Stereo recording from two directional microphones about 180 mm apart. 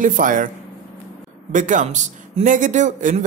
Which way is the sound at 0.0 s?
45° right (ahead or behind).